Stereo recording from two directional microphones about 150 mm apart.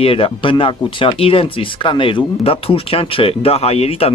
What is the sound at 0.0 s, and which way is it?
Speech, 40° left (ahead or behind).